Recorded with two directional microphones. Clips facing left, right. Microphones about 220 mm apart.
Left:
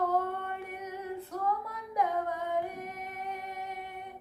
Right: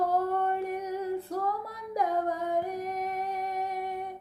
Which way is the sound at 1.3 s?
35° right (ahead or behind).